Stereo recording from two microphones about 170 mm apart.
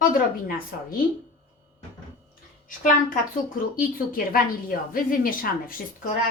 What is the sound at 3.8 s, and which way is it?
A woman's voice, 55° left (ahead or behind).